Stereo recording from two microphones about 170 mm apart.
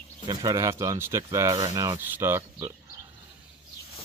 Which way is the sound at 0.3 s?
20° right (ahead or behind).